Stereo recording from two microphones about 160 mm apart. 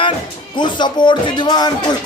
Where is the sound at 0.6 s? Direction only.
30° left (ahead or behind).